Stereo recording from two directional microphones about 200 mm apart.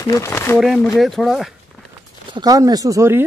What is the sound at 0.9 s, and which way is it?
Speech, centre (ahead or behind).